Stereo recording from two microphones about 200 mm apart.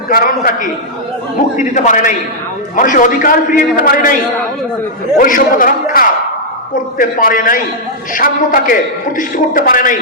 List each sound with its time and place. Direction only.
0.1 s a man's voice: 45° left (ahead or behind)
5.1 s a man's voice: 45° left (ahead or behind)